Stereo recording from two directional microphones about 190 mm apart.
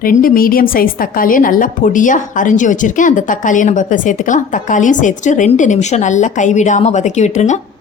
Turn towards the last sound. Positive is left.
turn(degrees=40)  # may be behind; listen again after turning